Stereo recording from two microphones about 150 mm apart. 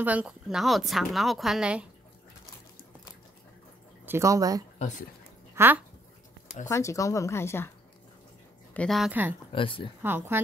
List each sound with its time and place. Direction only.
0.0 s a woman's voice: 10° right (ahead or behind)
4.0 s speech: 15° right (ahead or behind)
4.7 s speech: 50° left (ahead or behind)
5.5 s dog: 15° right (ahead or behind)
6.7 s speech: 20° left (ahead or behind)
8.7 s a woman's voice: centre (ahead or behind)
9.5 s speech: 35° left (ahead or behind)
10.0 s speech: 15° right (ahead or behind)